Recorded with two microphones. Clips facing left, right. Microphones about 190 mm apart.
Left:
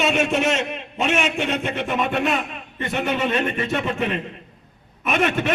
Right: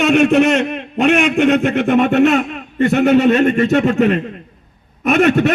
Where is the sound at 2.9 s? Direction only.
40° right (ahead or behind).